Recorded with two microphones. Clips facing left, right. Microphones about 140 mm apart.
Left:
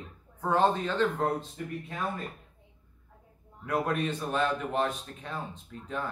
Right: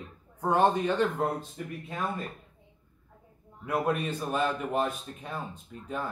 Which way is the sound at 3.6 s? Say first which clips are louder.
Right 1 dB; 5° right (ahead or behind).